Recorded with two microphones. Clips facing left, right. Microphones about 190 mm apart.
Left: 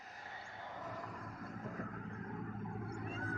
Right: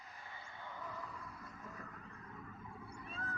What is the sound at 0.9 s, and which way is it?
Vehicle, 50° left (ahead or behind).